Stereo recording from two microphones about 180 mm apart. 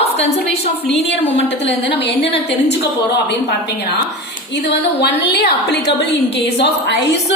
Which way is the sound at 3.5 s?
70° left (ahead or behind).